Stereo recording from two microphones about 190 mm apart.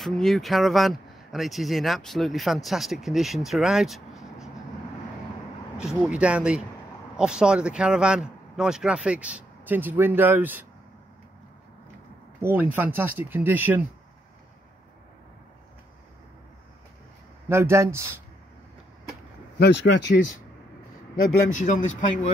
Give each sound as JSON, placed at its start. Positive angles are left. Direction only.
{"t": 0.0, "sound": "speech", "side_deg": 0}
{"t": 5.8, "sound": "speech", "side_deg": -5}
{"t": 12.4, "sound": "speech", "side_deg": -10}
{"t": 17.5, "sound": "speech", "side_deg": -15}
{"t": 19.6, "sound": "speech", "side_deg": 65}
{"t": 21.5, "sound": "speech", "side_deg": 40}